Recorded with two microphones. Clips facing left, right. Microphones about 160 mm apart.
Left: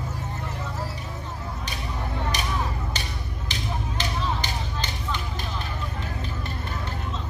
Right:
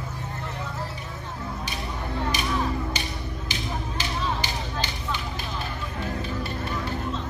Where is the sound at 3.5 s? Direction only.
10° right (ahead or behind).